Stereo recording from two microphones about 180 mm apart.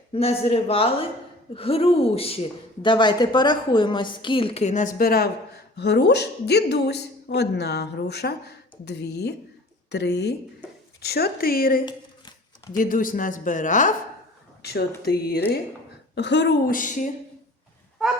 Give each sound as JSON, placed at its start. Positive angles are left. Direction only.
{"t": 0.1, "sound": "a woman's voice", "side_deg": 30}
{"t": 11.9, "sound": "a sound", "side_deg": 25}
{"t": 12.7, "sound": "speech", "side_deg": 50}
{"t": 14.6, "sound": "speech", "side_deg": 60}
{"t": 16.1, "sound": "speech", "side_deg": 75}
{"t": 16.6, "sound": "speech", "side_deg": 45}